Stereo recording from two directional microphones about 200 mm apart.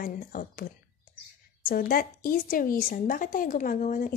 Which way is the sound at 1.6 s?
45° left (ahead or behind).